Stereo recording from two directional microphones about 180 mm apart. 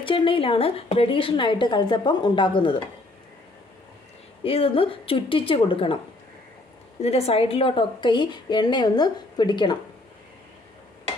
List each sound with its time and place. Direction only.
0.0 s a woman's voice: 30° left (ahead or behind)
4.4 s a woman's voice: 30° left (ahead or behind)
7.0 s a woman's voice: 35° left (ahead or behind)